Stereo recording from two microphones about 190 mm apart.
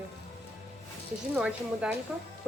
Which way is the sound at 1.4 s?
5° right (ahead or behind).